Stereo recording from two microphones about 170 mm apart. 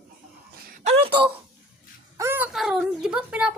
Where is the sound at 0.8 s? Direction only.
35° right (ahead or behind).